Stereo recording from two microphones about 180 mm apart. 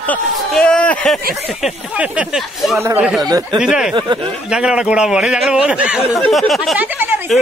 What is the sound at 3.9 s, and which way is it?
Speech, 25° right (ahead or behind).